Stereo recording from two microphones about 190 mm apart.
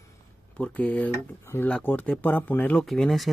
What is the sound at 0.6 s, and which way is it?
Speech, 5° left (ahead or behind).